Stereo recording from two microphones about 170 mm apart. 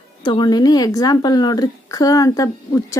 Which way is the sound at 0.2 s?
25° left (ahead or behind).